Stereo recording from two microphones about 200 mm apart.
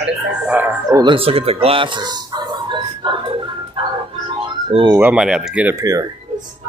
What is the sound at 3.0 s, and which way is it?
Music, 25° right (ahead or behind).